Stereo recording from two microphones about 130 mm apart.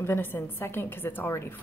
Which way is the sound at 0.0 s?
15° left (ahead or behind).